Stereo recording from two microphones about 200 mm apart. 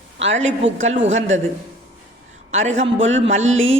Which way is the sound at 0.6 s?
35° right (ahead or behind).